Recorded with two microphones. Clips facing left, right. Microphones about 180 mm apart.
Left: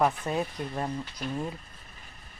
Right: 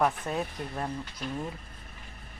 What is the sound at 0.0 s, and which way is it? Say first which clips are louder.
Speech: left 2 dB; 5° left (ahead or behind).